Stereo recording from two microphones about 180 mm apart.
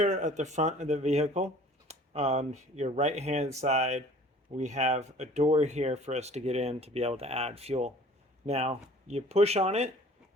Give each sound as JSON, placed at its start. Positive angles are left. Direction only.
{"t": 0.0, "sound": "speech", "side_deg": -40}